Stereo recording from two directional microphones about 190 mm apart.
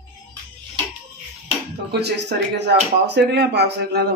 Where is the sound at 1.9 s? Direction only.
60° right (ahead or behind).